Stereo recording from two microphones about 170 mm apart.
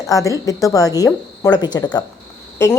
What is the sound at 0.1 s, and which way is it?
A woman's voice, 20° left (ahead or behind).